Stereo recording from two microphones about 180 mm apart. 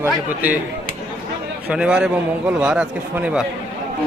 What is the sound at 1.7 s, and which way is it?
A man's voice, 5° right (ahead or behind).